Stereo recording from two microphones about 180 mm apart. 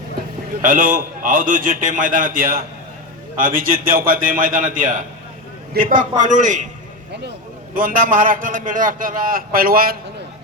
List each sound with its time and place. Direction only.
0.6 s a man's voice: 50° right (ahead or behind)